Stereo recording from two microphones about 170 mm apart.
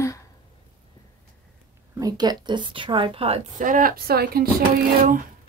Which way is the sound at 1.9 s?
20° right (ahead or behind).